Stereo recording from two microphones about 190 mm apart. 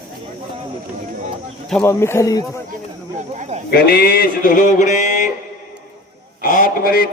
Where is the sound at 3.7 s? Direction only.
55° left (ahead or behind).